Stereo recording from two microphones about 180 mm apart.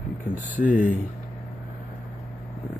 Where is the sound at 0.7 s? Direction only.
5° right (ahead or behind).